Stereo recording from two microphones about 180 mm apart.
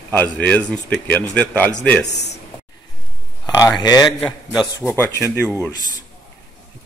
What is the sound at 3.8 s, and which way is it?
Speech, 20° left (ahead or behind).